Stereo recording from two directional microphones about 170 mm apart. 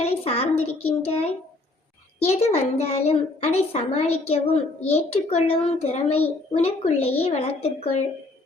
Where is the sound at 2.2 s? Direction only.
40° left (ahead or behind).